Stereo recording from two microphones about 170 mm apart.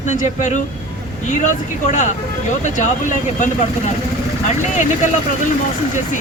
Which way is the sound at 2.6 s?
45° left (ahead or behind).